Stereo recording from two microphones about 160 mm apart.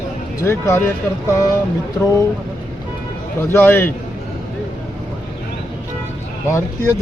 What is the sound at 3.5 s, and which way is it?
Speech, 15° left (ahead or behind).